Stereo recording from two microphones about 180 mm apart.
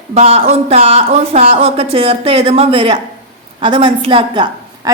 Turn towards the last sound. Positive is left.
turn(degrees=-25)  # may be behind; listen again after turning